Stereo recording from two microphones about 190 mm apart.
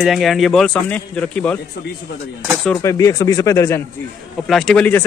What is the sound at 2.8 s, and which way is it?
Speech, 15° left (ahead or behind).